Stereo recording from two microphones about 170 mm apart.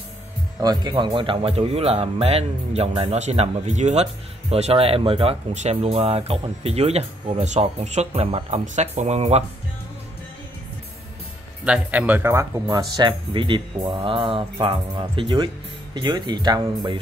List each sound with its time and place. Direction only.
0.6 s speech: 25° right (ahead or behind); by 9.4 s 40° right (ahead or behind)
11.6 s speech: 5° right (ahead or behind); by 17.0 s 25° right (ahead or behind)